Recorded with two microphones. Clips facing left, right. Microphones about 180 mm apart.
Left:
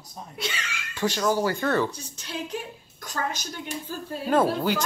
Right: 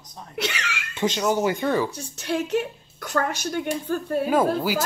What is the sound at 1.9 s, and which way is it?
A woman's voice, 65° right (ahead or behind).